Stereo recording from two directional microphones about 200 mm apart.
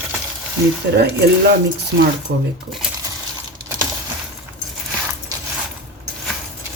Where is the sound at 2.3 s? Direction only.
50° right (ahead or behind).